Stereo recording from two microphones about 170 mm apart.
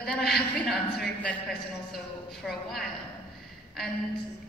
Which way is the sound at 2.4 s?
Centre (ahead or behind).